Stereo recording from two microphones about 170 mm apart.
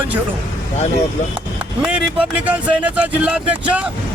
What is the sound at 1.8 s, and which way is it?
Speech, 5° right (ahead or behind).